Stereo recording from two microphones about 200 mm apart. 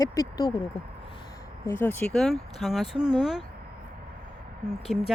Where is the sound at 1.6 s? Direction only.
10° left (ahead or behind).